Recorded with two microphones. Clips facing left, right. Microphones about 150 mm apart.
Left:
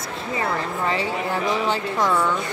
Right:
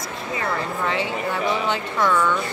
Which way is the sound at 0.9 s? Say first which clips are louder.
Left 1 dB; 35° left (ahead or behind).